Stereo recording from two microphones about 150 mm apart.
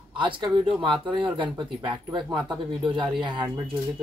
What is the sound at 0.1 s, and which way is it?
Speech, 35° right (ahead or behind).